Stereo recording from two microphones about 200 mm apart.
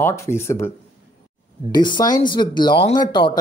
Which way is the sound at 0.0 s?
15° left (ahead or behind).